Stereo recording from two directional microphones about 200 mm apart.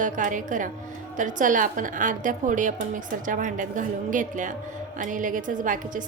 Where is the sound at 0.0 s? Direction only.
40° right (ahead or behind).